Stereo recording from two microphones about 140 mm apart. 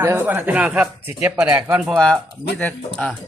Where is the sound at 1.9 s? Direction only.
5° left (ahead or behind).